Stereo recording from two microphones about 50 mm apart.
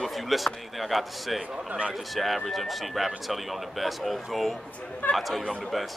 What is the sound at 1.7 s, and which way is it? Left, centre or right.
Speech, right.